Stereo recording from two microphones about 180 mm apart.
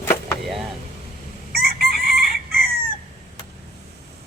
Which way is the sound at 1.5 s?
60° right (ahead or behind).